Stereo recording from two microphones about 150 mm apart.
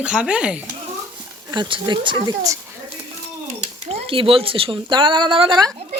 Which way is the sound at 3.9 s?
40° right (ahead or behind).